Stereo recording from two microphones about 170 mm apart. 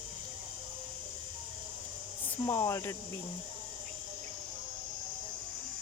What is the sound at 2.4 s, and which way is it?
Cricket, 15° left (ahead or behind).